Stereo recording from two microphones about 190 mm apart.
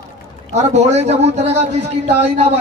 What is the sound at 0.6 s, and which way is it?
Speech, 35° right (ahead or behind).